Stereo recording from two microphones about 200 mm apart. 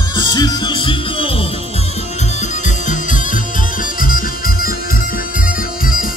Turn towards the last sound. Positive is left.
turn(degrees=45)  # may be behind; listen again after turning